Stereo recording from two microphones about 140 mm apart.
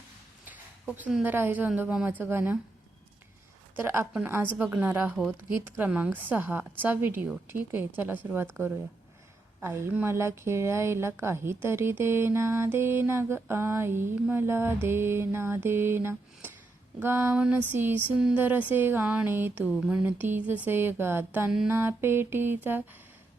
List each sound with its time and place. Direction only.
1.2 s speech: 15° right (ahead or behind)
3.8 s speech: 20° right (ahead or behind)